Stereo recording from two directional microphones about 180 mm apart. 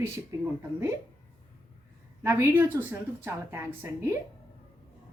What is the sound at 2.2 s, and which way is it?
Speech, 15° right (ahead or behind).